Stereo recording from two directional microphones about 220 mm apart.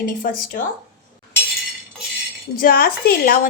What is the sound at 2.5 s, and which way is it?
Speech, 40° left (ahead or behind).